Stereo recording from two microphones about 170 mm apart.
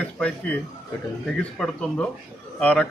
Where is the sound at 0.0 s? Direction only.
5° left (ahead or behind).